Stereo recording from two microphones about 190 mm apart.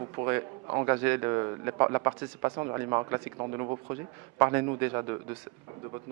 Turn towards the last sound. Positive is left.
turn(degrees=-15)  # may be behind; listen again after turning